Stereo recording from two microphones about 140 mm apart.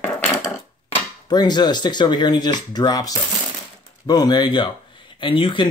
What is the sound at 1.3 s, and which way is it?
Speech, 30° left (ahead or behind).